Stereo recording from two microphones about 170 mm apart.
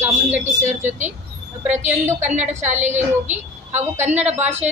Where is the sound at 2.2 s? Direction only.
45° right (ahead or behind).